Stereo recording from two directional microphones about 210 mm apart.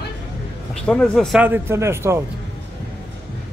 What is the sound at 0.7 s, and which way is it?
Speech, 5° left (ahead or behind).